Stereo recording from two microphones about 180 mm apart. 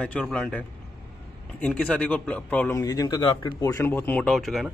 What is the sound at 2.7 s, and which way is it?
Speech, 20° left (ahead or behind).